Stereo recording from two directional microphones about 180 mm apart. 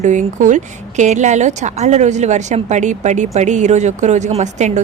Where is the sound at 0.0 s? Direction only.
45° right (ahead or behind).